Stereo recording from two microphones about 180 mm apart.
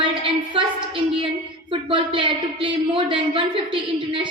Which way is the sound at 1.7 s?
30° right (ahead or behind).